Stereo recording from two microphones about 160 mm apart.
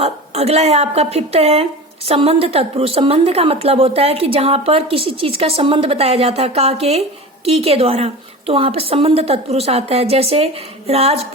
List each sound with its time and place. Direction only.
0.0 s a woman's voice: 40° right (ahead or behind)